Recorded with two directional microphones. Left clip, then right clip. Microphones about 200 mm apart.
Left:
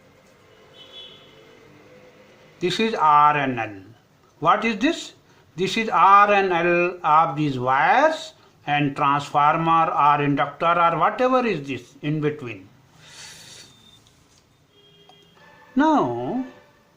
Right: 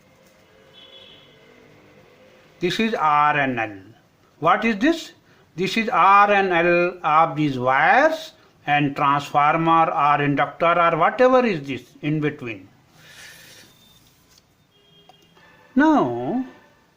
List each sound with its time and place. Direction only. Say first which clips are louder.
2.6 s speech: even; 25° right (ahead or behind)
13.1 s a sound: left 2 dB; 25° right (ahead or behind)
15.7 s speech: right 1 dB; 30° right (ahead or behind)